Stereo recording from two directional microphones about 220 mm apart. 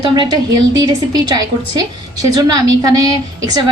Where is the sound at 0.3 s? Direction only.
15° right (ahead or behind).